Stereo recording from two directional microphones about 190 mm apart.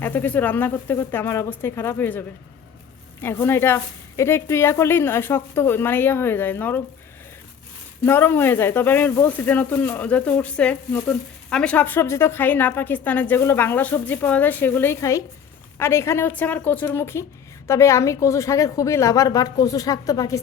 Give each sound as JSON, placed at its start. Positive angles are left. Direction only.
{"t": 0.0, "sound": "speech", "side_deg": 10}
{"t": 8.0, "sound": "speech", "side_deg": 10}